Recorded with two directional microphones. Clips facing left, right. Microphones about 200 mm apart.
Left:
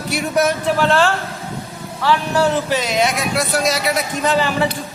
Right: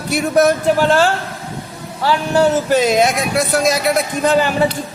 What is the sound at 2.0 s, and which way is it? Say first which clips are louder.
Speech: right 2 dB; 30° right (ahead or behind).